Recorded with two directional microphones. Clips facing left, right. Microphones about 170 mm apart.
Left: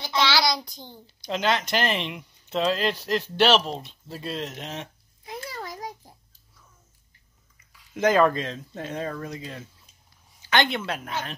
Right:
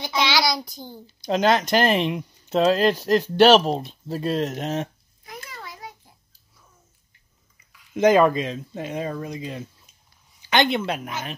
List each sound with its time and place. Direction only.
0.0 s child singing: 15° right (ahead or behind)
1.2 s speech: 40° right (ahead or behind)
5.2 s a sound: 30° left (ahead or behind)
7.9 s speech: 15° right (ahead or behind)